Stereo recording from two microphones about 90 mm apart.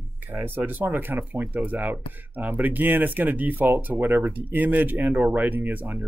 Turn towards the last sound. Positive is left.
turn(degrees=-20)  # may be behind; listen again after turning